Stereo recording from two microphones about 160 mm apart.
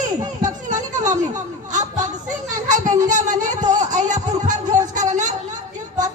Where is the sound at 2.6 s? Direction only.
50° right (ahead or behind).